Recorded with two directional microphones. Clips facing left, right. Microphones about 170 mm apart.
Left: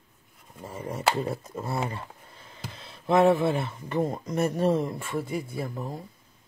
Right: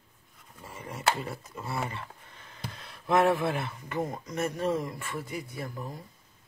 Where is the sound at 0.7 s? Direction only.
45° left (ahead or behind).